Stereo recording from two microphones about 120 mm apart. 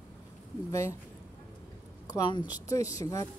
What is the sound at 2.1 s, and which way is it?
A woman's voice, 35° left (ahead or behind).